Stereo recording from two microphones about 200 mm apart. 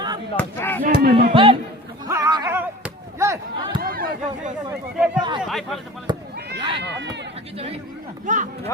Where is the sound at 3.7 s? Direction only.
50° right (ahead or behind).